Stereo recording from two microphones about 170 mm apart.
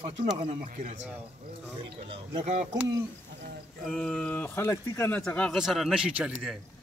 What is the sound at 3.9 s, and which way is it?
A man's voice, 5° left (ahead or behind).